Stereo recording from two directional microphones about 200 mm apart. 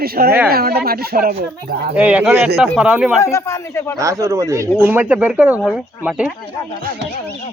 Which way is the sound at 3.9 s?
15° right (ahead or behind).